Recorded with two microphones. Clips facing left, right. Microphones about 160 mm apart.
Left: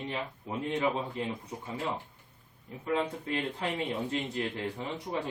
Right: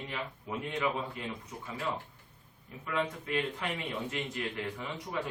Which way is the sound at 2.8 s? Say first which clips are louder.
Left 3 dB; 35° left (ahead or behind).